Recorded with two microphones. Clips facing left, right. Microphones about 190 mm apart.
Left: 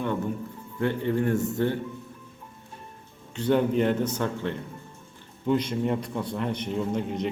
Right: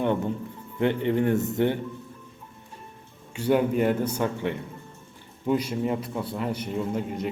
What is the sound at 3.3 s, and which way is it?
A man's voice, 10° right (ahead or behind).